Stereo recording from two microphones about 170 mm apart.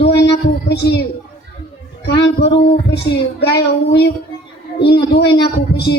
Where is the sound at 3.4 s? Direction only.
75° left (ahead or behind).